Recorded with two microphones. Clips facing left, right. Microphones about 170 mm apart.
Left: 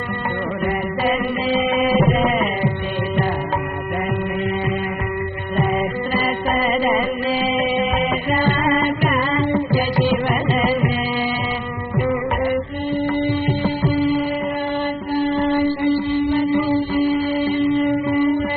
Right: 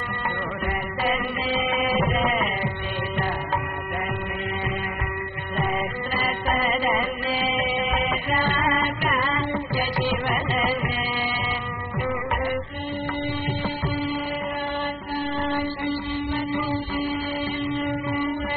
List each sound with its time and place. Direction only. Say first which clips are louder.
2.0 s music: left 6 dB; 35° left (ahead or behind)
6.1 s music: left 4 dB; 30° left (ahead or behind)
8.5 s music: left 8 dB; 30° left (ahead or behind)